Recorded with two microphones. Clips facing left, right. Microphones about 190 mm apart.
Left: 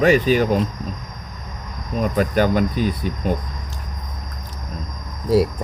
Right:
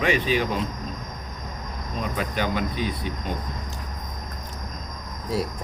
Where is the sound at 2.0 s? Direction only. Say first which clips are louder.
Left 9 dB; 45° left (ahead or behind).